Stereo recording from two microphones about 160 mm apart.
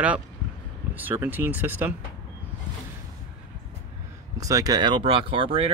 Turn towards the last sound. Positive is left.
turn(degrees=-35)  # may be behind; listen again after turning